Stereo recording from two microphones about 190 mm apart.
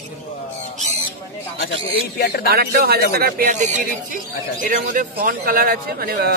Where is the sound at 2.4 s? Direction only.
55° right (ahead or behind).